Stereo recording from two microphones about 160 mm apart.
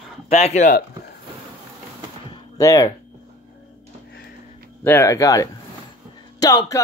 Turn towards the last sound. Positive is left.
turn(degrees=20)  # may be behind; listen again after turning